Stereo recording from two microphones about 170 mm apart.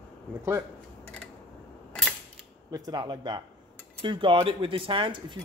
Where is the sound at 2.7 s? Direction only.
25° right (ahead or behind).